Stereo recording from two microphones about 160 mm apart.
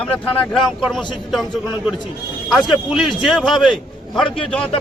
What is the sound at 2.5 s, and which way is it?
A man's voice, centre (ahead or behind).